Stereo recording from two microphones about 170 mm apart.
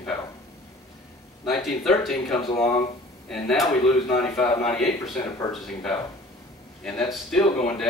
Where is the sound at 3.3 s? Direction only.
5° left (ahead or behind).